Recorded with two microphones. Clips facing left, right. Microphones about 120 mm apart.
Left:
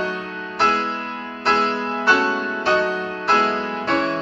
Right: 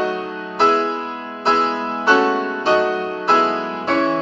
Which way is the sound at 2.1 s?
25° right (ahead or behind).